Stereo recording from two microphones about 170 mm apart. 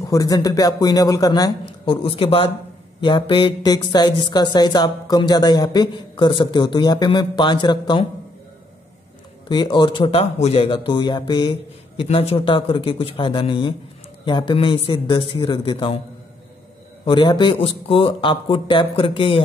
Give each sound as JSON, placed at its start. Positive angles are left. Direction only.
{"t": 0.0, "sound": "speech", "side_deg": 20}
{"t": 9.5, "sound": "a man's voice", "side_deg": 25}
{"t": 17.0, "sound": "a man's voice", "side_deg": 30}